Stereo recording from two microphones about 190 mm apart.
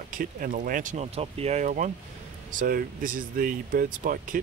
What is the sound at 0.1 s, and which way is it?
Speech, 45° right (ahead or behind).